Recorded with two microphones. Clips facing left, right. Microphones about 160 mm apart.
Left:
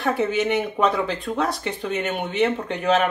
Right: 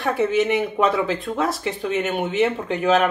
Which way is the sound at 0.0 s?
Centre (ahead or behind).